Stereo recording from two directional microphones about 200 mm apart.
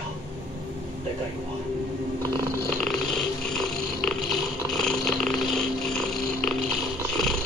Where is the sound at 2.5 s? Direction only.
5° left (ahead or behind).